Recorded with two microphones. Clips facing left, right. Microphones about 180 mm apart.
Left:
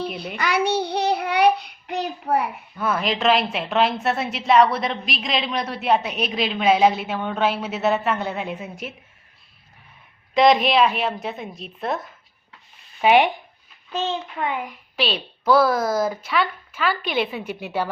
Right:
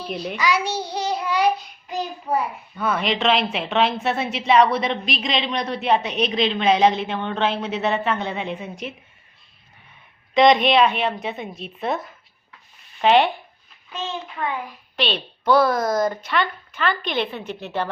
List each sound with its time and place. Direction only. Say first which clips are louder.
0.3 s child singing: left 2 dB; 60° left (ahead or behind)
2.7 s a woman's voice: right 1 dB; centre (ahead or behind)
10.3 s a woman's voice: right 1 dB; centre (ahead or behind)
13.0 s speech: even; 10° left (ahead or behind)
14.9 s a woman's voice: even; 5° left (ahead or behind)